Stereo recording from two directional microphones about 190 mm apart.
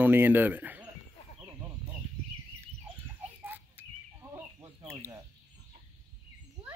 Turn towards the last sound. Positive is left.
turn(degrees=-15)  # may be behind; listen again after turning